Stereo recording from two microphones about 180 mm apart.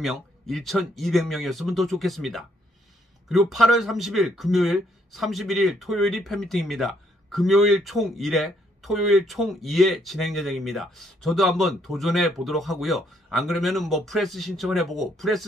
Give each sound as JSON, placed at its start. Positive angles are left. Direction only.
{"t": 0.0, "sound": "speech", "side_deg": 0}